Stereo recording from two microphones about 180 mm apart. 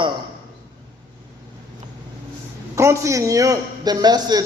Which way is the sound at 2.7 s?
15° right (ahead or behind).